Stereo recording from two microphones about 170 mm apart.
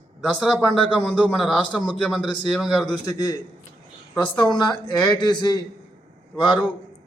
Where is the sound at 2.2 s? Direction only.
25° left (ahead or behind).